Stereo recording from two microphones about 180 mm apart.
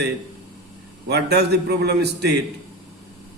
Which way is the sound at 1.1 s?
65° right (ahead or behind).